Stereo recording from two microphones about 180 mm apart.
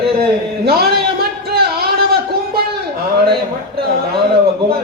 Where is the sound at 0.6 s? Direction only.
60° right (ahead or behind).